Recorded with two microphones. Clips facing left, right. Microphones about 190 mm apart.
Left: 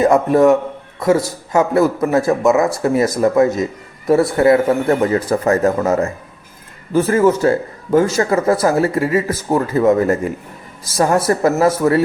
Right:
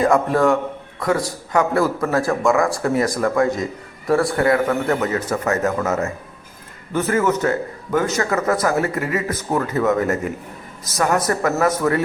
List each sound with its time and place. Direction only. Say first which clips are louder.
0.0 s a man's voice: left 5 dB; 20° left (ahead or behind)